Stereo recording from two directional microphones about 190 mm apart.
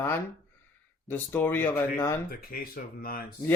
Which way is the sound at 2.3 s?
50° left (ahead or behind).